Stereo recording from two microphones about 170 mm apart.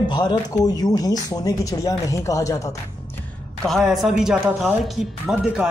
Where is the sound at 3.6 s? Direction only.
Centre (ahead or behind).